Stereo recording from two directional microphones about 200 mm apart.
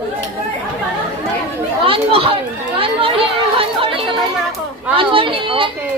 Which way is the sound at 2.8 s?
25° right (ahead or behind).